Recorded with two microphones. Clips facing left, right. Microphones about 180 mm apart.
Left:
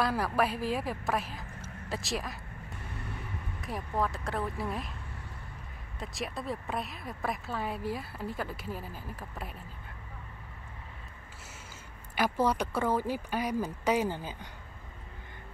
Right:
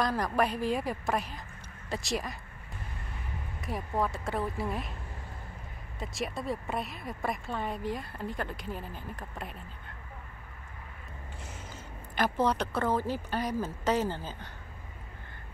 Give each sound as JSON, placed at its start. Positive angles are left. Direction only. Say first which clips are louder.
{"t": 0.0, "sound": "a woman's voice", "louder": "even", "side_deg": 5}
{"t": 3.6, "sound": "speech", "louder": "right 1 dB", "side_deg": 0}
{"t": 5.9, "sound": "speech", "louder": "right 2 dB", "side_deg": 0}
{"t": 12.2, "sound": "speech", "louder": "even", "side_deg": 10}